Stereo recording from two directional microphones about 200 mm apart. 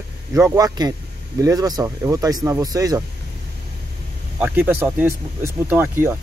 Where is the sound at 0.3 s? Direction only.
15° right (ahead or behind).